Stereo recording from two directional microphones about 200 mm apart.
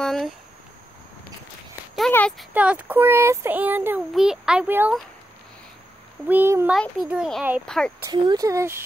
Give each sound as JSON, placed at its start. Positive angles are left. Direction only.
{"t": 0.0, "sound": "a sound", "side_deg": 5}
{"t": 2.0, "sound": "a child's voice", "side_deg": 5}
{"t": 2.5, "sound": "speech", "side_deg": -5}
{"t": 6.2, "sound": "a child's voice", "side_deg": -10}
{"t": 8.0, "sound": "speech", "side_deg": -20}